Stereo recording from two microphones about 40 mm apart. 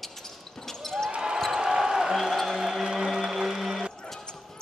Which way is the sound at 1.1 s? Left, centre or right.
Right.